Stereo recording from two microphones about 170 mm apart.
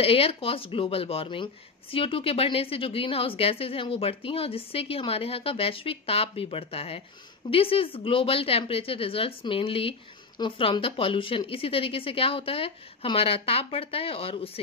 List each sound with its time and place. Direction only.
0.0 s speech: 35° left (ahead or behind)